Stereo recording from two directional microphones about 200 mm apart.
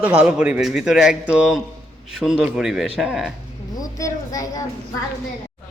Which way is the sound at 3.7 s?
20° left (ahead or behind).